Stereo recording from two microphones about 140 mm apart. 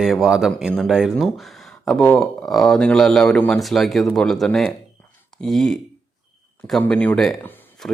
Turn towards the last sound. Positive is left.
turn(degrees=15)  # may be behind; listen again after turning